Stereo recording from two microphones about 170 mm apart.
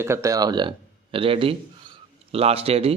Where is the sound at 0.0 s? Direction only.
15° right (ahead or behind).